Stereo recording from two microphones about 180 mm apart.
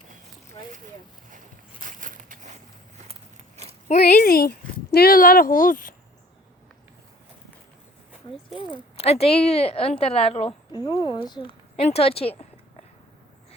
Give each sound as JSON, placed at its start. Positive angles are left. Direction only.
{"t": 1.8, "sound": "a sound", "side_deg": -50}
{"t": 3.1, "sound": "biting", "side_deg": -35}
{"t": 3.8, "sound": "speech", "side_deg": 45}
{"t": 8.7, "sound": "speech", "side_deg": 35}
{"t": 11.4, "sound": "speech", "side_deg": 35}